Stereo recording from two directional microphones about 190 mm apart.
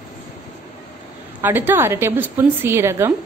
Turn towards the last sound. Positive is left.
turn(degrees=-15)  # may be behind; listen again after turning